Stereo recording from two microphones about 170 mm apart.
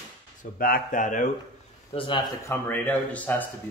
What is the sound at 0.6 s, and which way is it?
Speech, 55° left (ahead or behind).